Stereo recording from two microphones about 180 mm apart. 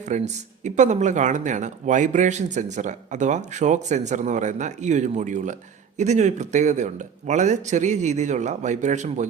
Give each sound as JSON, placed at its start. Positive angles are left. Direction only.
{"t": 0.1, "sound": "speech", "side_deg": -40}